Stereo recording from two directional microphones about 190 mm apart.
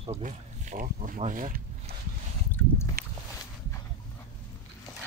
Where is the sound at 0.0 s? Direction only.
35° right (ahead or behind).